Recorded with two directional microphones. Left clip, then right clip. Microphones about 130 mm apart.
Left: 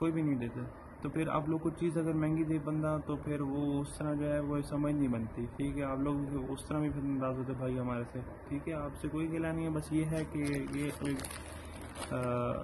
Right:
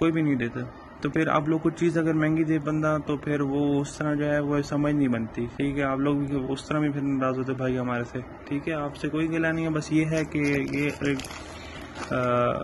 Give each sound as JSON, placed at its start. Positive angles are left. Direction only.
{"t": 1.0, "sound": "a man's voice", "side_deg": -15}